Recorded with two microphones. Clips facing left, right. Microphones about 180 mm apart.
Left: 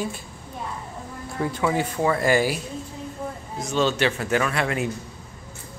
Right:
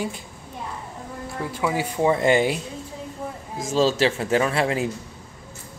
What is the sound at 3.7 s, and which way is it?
Speech, 30° right (ahead or behind).